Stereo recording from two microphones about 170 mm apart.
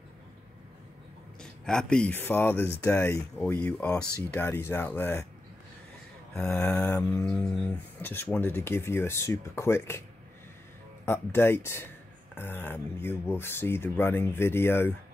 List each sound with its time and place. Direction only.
1.4 s speech: 5° left (ahead or behind)
6.4 s speech: 10° left (ahead or behind)
11.1 s speech: 15° left (ahead or behind)